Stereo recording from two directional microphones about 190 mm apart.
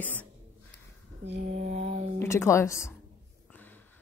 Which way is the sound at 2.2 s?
15° left (ahead or behind).